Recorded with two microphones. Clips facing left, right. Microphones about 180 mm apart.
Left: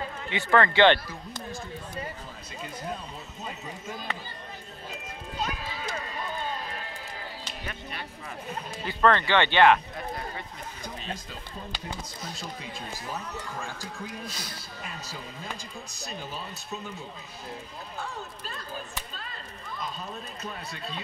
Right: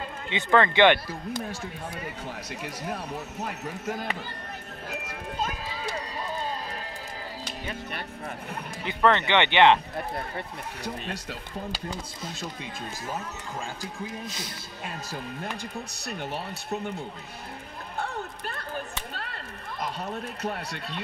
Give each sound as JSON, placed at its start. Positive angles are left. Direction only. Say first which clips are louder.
{"t": 0.3, "sound": "speech", "louder": "right 1 dB", "side_deg": -20}
{"t": 2.6, "sound": "speech", "louder": "right 1 dB", "side_deg": -75}
{"t": 4.8, "sound": "clip-clop", "louder": "right 4 dB", "side_deg": -70}
{"t": 5.8, "sound": "run", "louder": "right 2 dB", "side_deg": -35}
{"t": 8.8, "sound": "speech", "louder": "even", "side_deg": -20}
{"t": 10.3, "sound": "speech", "louder": "right 4 dB", "side_deg": -65}
{"t": 15.0, "sound": "speech", "louder": "right 4 dB", "side_deg": -65}
{"t": 17.9, "sound": "run", "louder": "right 5 dB", "side_deg": -60}